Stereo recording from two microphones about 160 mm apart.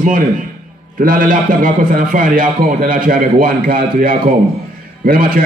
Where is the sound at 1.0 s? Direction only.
60° right (ahead or behind).